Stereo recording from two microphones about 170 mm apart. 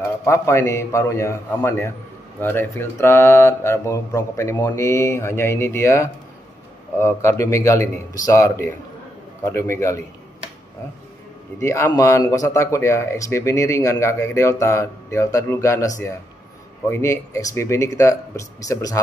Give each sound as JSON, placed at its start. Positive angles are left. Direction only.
{"t": 0.2, "sound": "speech", "side_deg": 15}
{"t": 11.6, "sound": "speech", "side_deg": 15}